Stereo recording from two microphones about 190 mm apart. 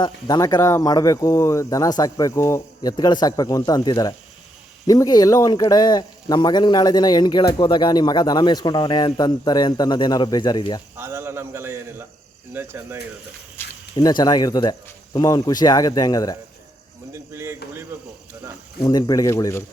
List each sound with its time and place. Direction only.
0.0 s a man's voice: 20° left (ahead or behind)
10.9 s a man's voice: 10° right (ahead or behind)
13.6 s a sound: 10° left (ahead or behind)
13.9 s a man's voice: 20° left (ahead or behind)
17.1 s a sound: 15° right (ahead or behind)
17.9 s a man's voice: 10° right (ahead or behind)
18.8 s a man's voice: 20° left (ahead or behind)